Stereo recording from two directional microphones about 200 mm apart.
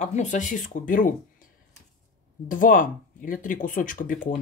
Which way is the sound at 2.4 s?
45° left (ahead or behind).